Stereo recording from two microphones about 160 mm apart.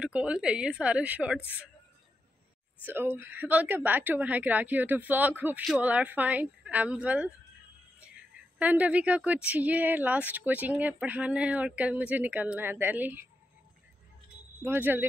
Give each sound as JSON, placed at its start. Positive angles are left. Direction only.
{"t": 0.0, "sound": "a woman's voice", "side_deg": -5}
{"t": 2.8, "sound": "a woman's voice", "side_deg": -15}
{"t": 8.5, "sound": "a woman's voice", "side_deg": -10}
{"t": 14.6, "sound": "a woman's voice", "side_deg": -10}